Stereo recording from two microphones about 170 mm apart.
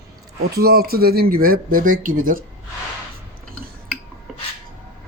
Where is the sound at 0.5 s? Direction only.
65° right (ahead or behind).